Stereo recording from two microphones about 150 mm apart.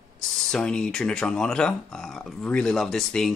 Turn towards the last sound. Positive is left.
turn(degrees=5)  # may be behind; listen again after turning